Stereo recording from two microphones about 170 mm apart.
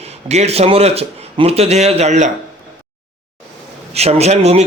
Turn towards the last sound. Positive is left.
turn(degrees=-40)  # may be behind; listen again after turning